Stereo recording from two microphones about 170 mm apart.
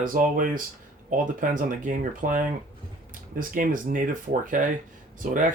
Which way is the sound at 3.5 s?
50° right (ahead or behind).